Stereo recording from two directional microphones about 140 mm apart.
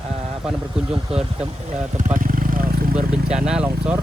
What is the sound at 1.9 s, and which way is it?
Vehicle, 70° right (ahead or behind).